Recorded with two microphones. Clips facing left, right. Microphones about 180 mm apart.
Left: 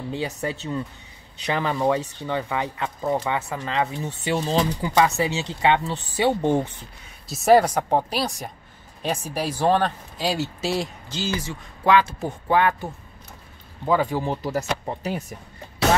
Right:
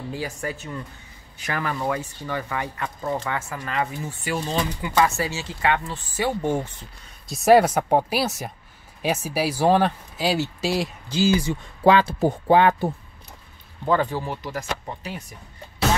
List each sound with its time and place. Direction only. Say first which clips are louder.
0.1 s speech: left 3 dB; 25° left (ahead or behind)
4.9 s speech: left 1 dB; 20° left (ahead or behind)
7.2 s speech: right 1 dB; centre (ahead or behind)
11.8 s a man's voice: right 2 dB; 30° right (ahead or behind)
13.8 s speech: even; 10° left (ahead or behind)
14.2 s speech: left 5 dB; 35° left (ahead or behind)